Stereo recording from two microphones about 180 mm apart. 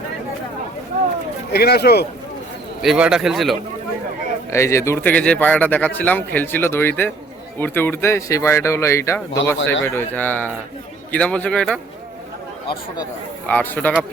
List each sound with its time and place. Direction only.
1.5 s speech: 60° left (ahead or behind)
2.8 s a man's voice: 5° right (ahead or behind)
4.5 s speech: 15° left (ahead or behind)
13.5 s speech: 10° left (ahead or behind)